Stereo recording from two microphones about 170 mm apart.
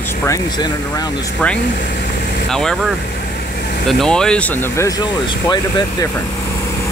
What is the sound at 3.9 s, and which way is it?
Speech, 5° left (ahead or behind).